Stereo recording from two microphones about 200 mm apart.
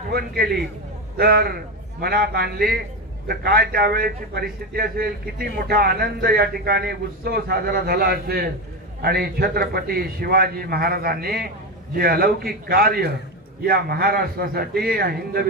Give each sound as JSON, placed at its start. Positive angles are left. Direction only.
{"t": 0.1, "sound": "a man's voice", "side_deg": -50}